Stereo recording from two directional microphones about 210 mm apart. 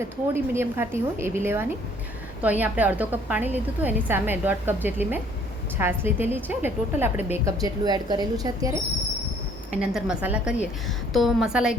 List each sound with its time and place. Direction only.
0.0 s a woman's voice: 10° right (ahead or behind)
9.8 s a woman's voice: 5° right (ahead or behind)